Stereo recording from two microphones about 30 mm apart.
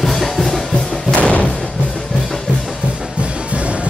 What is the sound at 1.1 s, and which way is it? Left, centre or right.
Music, left.